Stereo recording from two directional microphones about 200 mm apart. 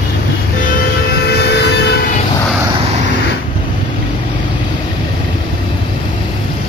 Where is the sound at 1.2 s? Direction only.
55° left (ahead or behind).